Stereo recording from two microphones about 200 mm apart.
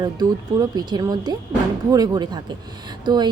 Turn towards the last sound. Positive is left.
turn(degrees=-20)  # may be behind; listen again after turning